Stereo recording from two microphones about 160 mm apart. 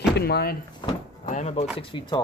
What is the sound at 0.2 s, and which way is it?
Speech, 80° left.